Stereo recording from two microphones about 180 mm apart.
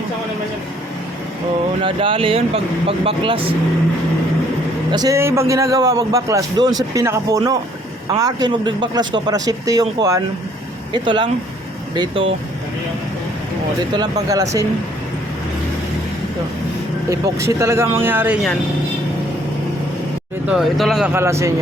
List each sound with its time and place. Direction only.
1.8 s speech: 30° right (ahead or behind)
4.9 s a man's voice: 20° right (ahead or behind)
13.9 s a man's voice: 20° right (ahead or behind)
17.1 s speech: 15° right (ahead or behind)
20.5 s speech: centre (ahead or behind)
21.1 s speech: 15° right (ahead or behind)